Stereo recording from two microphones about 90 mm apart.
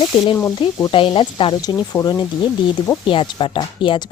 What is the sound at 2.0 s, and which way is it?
Speech, 35° left (ahead or behind).